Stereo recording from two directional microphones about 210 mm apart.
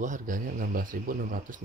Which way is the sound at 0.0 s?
40° right (ahead or behind).